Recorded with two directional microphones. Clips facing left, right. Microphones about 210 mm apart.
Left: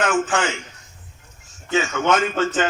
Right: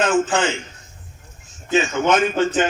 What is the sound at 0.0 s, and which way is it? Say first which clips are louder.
Speech: right 2 dB; 25° right (ahead or behind).